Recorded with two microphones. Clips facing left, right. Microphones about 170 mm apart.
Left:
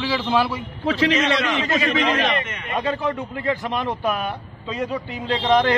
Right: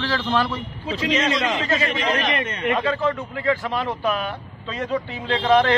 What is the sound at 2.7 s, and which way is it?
A man's voice, 15° left (ahead or behind).